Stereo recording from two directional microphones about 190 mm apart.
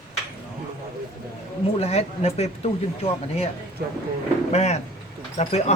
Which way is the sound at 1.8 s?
35° left (ahead or behind).